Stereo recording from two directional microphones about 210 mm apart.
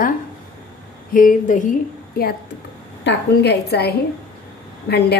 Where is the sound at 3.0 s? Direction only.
55° left (ahead or behind).